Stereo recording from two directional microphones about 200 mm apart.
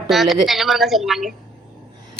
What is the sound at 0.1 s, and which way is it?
Speech, centre (ahead or behind).